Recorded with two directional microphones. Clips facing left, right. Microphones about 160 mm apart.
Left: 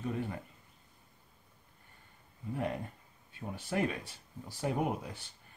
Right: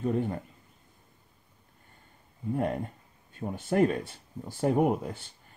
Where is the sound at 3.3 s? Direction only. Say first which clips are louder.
Right 9 dB; 50° right (ahead or behind).